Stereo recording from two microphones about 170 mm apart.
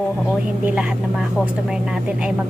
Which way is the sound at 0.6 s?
5° right (ahead or behind).